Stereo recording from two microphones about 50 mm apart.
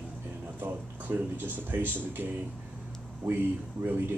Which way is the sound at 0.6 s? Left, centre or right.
Right.